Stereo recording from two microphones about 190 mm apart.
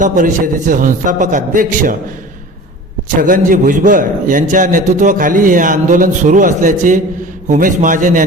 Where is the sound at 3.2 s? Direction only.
45° right (ahead or behind).